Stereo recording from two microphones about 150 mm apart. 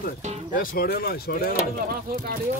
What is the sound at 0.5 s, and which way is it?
Speech, 80° left.